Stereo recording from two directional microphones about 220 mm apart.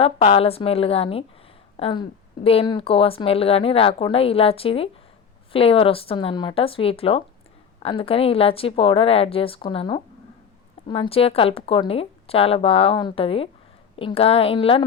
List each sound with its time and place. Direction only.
0.0 s speech: 25° left (ahead or behind)